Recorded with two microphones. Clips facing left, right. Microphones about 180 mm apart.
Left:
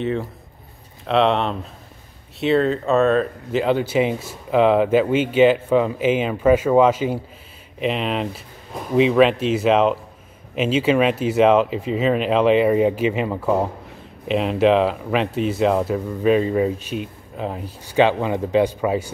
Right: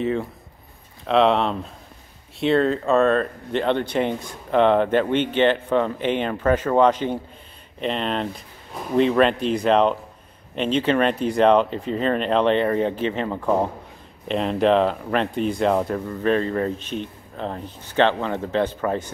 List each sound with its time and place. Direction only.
0.0 s speech: centre (ahead or behind)